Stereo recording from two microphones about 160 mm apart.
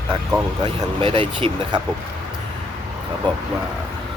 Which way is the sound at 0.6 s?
30° right (ahead or behind).